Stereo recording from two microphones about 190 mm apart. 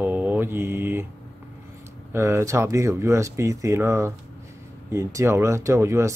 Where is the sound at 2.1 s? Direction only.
15° right (ahead or behind).